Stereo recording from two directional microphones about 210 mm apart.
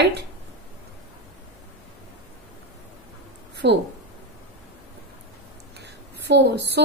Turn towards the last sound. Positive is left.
turn(degrees=-55)  # may be behind; listen again after turning